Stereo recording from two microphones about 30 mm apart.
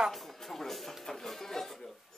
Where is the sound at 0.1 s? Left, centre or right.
Centre.